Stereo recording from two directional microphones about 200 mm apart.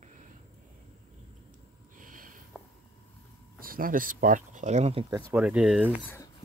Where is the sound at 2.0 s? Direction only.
45° right (ahead or behind).